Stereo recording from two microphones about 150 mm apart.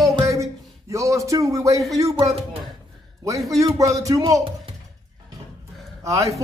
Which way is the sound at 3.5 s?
20° right (ahead or behind).